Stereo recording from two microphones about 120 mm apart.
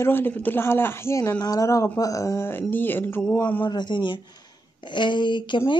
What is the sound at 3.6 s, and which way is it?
Speech, 40° left (ahead or behind).